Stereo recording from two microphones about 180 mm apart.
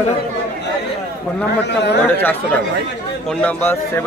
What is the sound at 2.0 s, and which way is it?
A man's voice, 10° left (ahead or behind).